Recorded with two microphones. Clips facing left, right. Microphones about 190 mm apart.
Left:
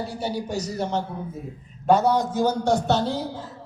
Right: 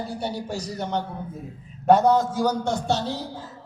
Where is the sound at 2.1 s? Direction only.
20° left (ahead or behind).